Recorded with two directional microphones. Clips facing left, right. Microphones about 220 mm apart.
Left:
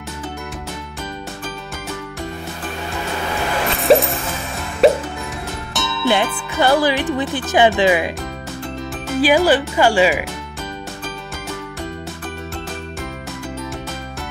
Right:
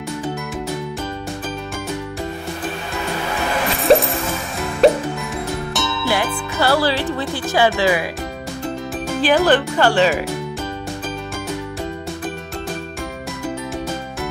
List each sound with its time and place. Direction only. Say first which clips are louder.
3.8 s music: even; centre (ahead or behind)
6.0 s speech: left 5 dB; 20° left (ahead or behind)
9.2 s speech: left 1 dB; 10° left (ahead or behind)